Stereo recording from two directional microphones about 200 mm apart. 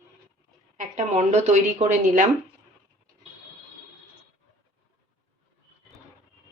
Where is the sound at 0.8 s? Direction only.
35° right (ahead or behind).